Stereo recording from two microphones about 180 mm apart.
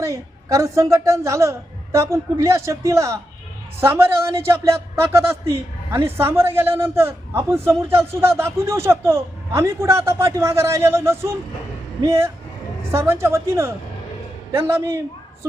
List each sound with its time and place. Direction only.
0.0 s speech: 15° right (ahead or behind)